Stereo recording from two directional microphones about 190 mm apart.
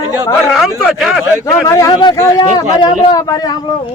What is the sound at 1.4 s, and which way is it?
Speech, 15° left (ahead or behind).